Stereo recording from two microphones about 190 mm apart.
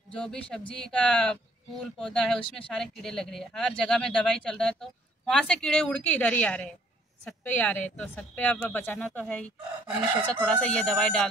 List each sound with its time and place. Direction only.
0.1 s a woman's voice: 5° left (ahead or behind)
10.4 s speech: 5° left (ahead or behind)